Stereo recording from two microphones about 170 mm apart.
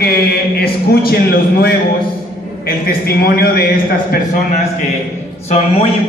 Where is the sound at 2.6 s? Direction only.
60° left (ahead or behind).